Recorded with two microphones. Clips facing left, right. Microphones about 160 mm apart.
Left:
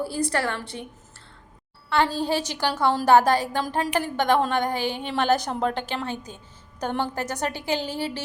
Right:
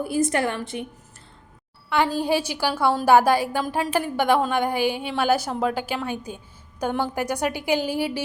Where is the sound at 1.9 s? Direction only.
10° right (ahead or behind).